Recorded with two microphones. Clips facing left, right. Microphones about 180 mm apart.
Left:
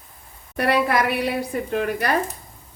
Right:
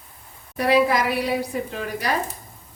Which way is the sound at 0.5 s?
60° left (ahead or behind).